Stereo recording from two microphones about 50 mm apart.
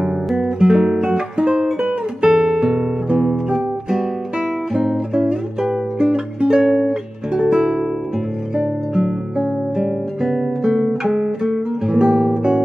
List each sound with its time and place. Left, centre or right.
0.4 s guitar: centre
4.7 s music: centre
8.5 s guitar: centre